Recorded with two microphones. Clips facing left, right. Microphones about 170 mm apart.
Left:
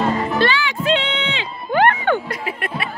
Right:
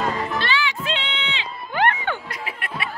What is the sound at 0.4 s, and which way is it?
Music, 45° left (ahead or behind).